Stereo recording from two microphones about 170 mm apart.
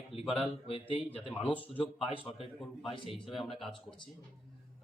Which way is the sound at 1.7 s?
35° left (ahead or behind).